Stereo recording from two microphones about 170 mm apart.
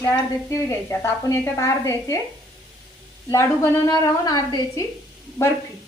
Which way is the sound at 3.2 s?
15° left (ahead or behind).